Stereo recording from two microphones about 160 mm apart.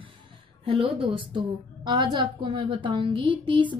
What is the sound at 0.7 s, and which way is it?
A woman's voice, 35° right (ahead or behind).